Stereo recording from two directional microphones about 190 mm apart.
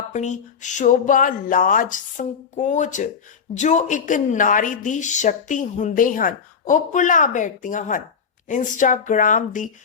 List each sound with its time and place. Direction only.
0.1 s a woman's voice: 40° left (ahead or behind)